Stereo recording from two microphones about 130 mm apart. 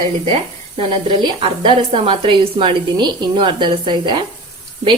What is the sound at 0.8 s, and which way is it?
Speech, 40° right (ahead or behind).